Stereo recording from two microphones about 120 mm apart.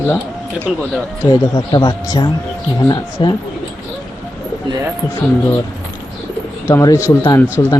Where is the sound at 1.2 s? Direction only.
35° left (ahead or behind).